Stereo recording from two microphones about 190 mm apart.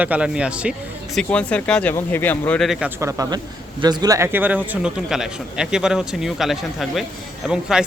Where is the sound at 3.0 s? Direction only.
15° right (ahead or behind).